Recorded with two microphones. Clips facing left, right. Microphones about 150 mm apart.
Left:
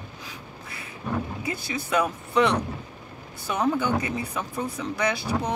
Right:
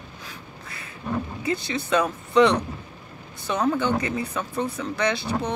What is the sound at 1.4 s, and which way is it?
Speech, 10° left (ahead or behind).